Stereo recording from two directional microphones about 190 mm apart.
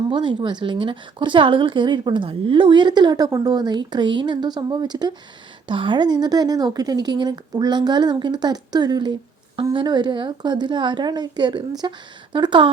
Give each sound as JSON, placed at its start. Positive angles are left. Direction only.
{"t": 0.1, "sound": "speech", "side_deg": -25}